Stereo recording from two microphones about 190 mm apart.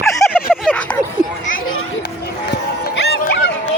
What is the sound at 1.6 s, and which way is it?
Children playing, 90° left.